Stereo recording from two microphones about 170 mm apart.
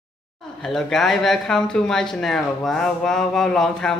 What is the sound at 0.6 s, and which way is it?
Speech, 5° left (ahead or behind).